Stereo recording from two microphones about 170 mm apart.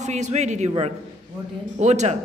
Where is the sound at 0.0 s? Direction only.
45° right (ahead or behind).